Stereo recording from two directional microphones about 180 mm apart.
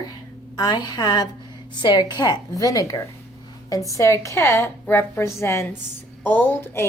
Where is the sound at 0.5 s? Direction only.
25° left (ahead or behind).